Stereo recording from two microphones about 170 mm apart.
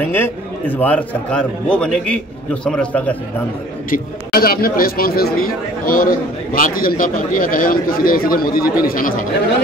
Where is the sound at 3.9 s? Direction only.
60° left (ahead or behind).